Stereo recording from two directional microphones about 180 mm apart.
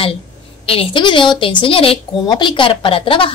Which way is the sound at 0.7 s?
30° left (ahead or behind).